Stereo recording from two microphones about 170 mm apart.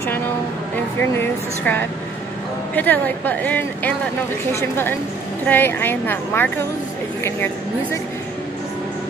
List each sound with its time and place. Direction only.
1.6 s a woman's voice: 10° left (ahead or behind)